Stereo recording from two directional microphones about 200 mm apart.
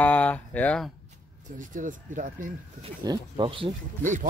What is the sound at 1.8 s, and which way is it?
Speech, 40° right (ahead or behind).